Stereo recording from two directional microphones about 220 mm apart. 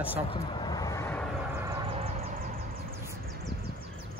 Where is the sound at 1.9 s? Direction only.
25° right (ahead or behind).